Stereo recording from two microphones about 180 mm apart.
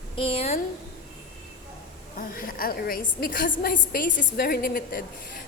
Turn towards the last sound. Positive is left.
turn(degrees=55)  # may be behind; listen again after turning